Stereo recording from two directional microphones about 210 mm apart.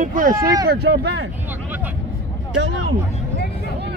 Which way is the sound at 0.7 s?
50° right (ahead or behind).